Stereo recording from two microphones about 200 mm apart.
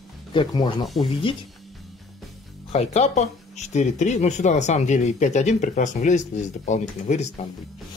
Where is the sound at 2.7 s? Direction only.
35° left (ahead or behind).